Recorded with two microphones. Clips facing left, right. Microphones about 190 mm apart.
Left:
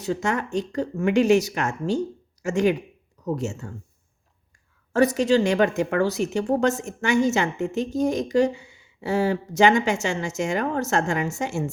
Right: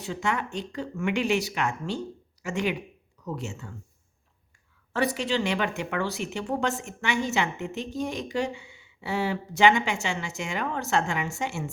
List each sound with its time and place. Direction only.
0.0 s a woman's voice: 40° left (ahead or behind)
4.9 s a woman's voice: 45° left (ahead or behind)